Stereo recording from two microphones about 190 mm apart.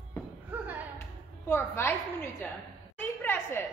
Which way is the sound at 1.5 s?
10° left (ahead or behind).